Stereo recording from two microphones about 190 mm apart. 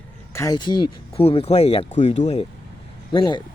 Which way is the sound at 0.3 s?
20° left (ahead or behind).